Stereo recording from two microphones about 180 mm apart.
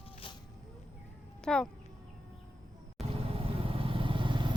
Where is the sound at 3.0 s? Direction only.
30° right (ahead or behind).